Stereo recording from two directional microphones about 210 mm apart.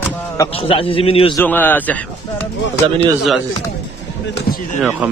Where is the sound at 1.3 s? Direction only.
10° left (ahead or behind).